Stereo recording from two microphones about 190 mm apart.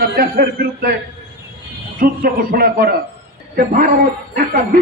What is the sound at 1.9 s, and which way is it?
A woman's voice, 50° right (ahead or behind).